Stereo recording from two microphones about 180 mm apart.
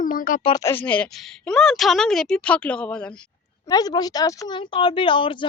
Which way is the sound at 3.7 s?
20° left (ahead or behind).